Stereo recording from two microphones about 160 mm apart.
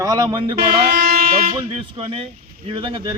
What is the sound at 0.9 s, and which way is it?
Vehicle, 65° right (ahead or behind).